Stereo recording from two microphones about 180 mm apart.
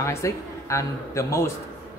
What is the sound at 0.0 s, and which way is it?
Speech, 15° left (ahead or behind).